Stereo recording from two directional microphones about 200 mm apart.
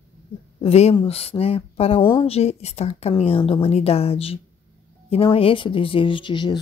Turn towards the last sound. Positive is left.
turn(degrees=25)  # may be behind; listen again after turning